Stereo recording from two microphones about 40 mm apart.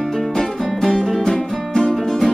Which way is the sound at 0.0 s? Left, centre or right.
Centre.